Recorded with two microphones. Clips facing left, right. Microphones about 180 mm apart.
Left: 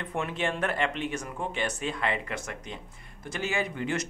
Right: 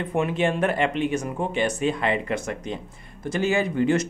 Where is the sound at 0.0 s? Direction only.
15° right (ahead or behind).